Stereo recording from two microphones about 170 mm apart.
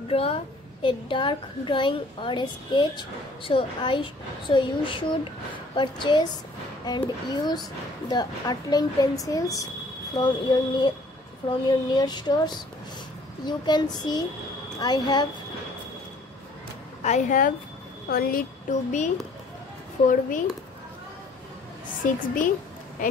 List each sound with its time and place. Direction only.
0.1 s a child's voice: 35° left (ahead or behind)
17.0 s speech: 45° left (ahead or behind)
18.0 s speech: 60° left (ahead or behind)
22.0 s speech: 50° left (ahead or behind)